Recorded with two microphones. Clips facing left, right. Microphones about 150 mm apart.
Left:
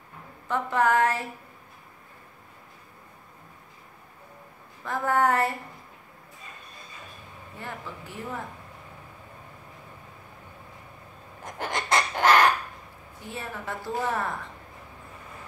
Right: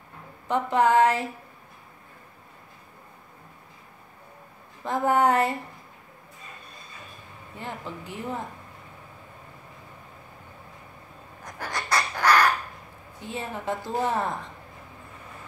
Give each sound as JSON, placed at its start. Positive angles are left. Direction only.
{"t": 0.5, "sound": "a woman's voice", "side_deg": -20}
{"t": 4.8, "sound": "a woman's voice", "side_deg": -20}
{"t": 7.6, "sound": "a woman's voice", "side_deg": -20}
{"t": 11.4, "sound": "crow", "side_deg": 25}
{"t": 13.2, "sound": "a woman's voice", "side_deg": -20}